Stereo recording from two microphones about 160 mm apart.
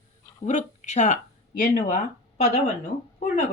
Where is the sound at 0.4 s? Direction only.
45° left (ahead or behind).